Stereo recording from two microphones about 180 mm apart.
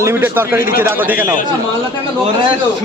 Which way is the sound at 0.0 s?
15° right (ahead or behind).